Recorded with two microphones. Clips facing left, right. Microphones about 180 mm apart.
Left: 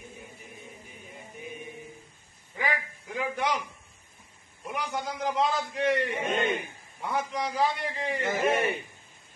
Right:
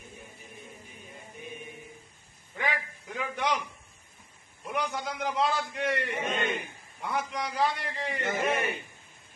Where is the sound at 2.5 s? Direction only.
5° left (ahead or behind).